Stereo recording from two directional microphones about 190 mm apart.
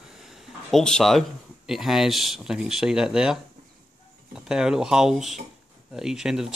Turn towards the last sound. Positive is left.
turn(degrees=0)  # may be behind; listen again after turning